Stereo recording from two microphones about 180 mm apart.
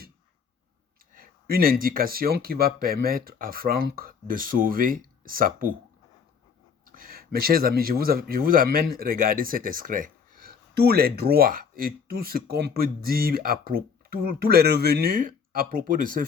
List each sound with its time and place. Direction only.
1.1 s a sound: 55° right (ahead or behind)
1.8 s speech: 55° right (ahead or behind)
6.8 s speech: 50° right (ahead or behind)